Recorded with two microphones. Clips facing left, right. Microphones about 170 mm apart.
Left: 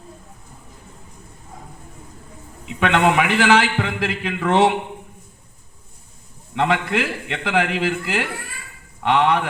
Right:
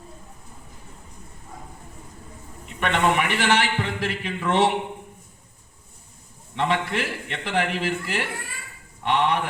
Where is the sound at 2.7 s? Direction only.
90° left.